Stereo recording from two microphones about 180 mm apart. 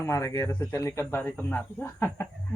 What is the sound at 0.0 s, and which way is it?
Speech, 15° left (ahead or behind).